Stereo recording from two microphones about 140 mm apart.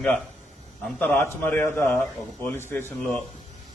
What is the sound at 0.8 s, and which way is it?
A man's voice, 15° left (ahead or behind).